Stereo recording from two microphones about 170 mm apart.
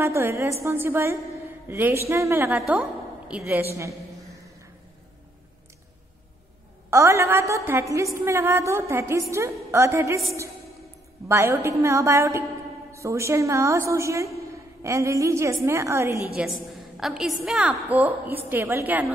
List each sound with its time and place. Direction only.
0.0 s a woman's voice: 15° right (ahead or behind)
6.9 s a woman's voice: 15° right (ahead or behind)
11.2 s a woman's voice: 15° right (ahead or behind)
16.3 s a woman's voice: centre (ahead or behind)